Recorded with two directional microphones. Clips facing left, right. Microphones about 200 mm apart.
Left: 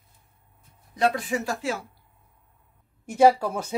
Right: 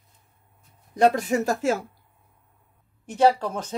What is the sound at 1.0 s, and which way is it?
Speech, 45° right (ahead or behind).